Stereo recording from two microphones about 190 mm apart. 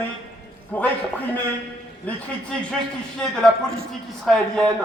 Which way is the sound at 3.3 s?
5° left (ahead or behind).